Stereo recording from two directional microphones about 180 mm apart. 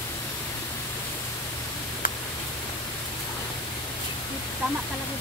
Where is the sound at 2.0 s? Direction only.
50° left (ahead or behind).